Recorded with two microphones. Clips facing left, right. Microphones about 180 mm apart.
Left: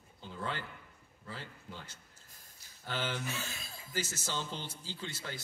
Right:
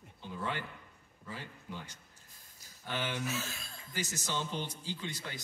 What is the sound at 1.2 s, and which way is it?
A man's voice, 15° right (ahead or behind).